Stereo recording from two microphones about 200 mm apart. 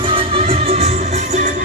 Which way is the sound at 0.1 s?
30° right (ahead or behind).